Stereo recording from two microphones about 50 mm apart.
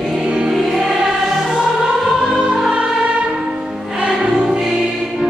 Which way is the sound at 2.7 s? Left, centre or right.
Right.